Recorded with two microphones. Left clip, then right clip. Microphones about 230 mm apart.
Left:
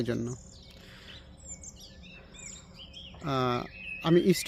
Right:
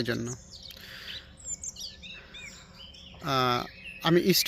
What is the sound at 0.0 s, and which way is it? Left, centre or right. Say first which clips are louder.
Speech: right 1 dB; centre.